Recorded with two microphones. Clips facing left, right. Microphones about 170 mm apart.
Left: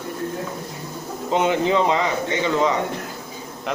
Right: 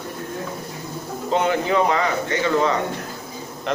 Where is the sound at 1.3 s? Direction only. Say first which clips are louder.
Left 1 dB; 20° left (ahead or behind).